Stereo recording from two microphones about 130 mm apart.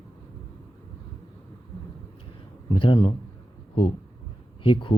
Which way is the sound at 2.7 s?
40° left (ahead or behind).